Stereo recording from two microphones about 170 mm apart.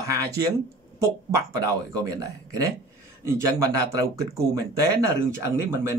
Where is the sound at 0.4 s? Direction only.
20° right (ahead or behind).